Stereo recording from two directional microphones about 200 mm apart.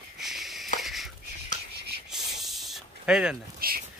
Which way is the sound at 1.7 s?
55° right (ahead or behind).